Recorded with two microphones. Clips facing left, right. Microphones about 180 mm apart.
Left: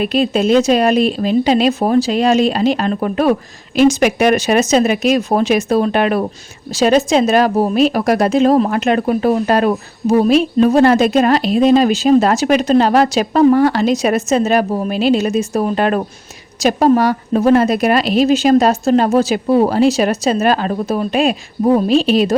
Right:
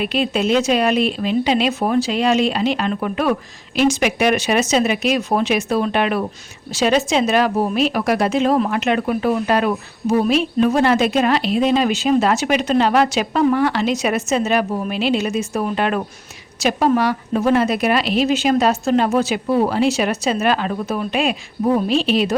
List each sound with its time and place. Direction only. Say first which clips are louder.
0.0 s speech: left 5 dB; 40° left (ahead or behind)